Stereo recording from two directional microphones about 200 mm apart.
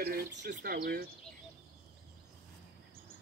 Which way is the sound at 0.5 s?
50° right (ahead or behind).